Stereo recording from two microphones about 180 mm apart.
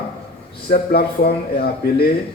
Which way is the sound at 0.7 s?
60° left (ahead or behind).